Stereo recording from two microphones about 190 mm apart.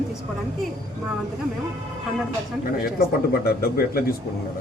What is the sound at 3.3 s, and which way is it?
Speech, 55° left (ahead or behind).